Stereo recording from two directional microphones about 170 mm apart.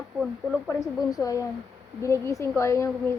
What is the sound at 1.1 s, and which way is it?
A woman's voice, 20° left (ahead or behind).